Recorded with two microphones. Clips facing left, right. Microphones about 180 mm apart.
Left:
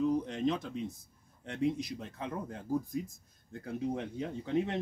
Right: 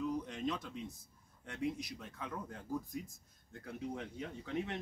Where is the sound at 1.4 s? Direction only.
30° left (ahead or behind).